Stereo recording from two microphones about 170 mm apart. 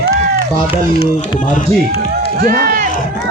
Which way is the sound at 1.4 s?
50° left (ahead or behind).